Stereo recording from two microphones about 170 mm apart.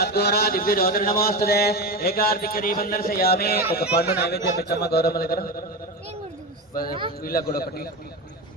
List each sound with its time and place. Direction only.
0.0 s speech: 70° left (ahead or behind)
7.2 s speech: 60° left (ahead or behind)